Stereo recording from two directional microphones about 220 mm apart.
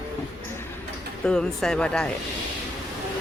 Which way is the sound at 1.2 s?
5° left (ahead or behind).